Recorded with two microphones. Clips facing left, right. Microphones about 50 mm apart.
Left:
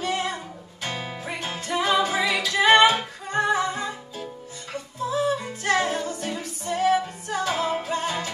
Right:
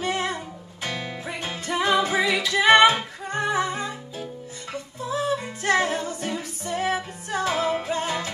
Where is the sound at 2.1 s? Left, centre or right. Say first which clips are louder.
Right 1 dB; right.